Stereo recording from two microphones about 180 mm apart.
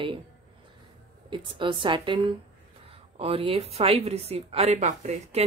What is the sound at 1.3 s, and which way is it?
A woman's voice, 25° right (ahead or behind).